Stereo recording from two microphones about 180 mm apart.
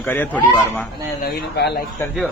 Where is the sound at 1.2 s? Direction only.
65° left (ahead or behind).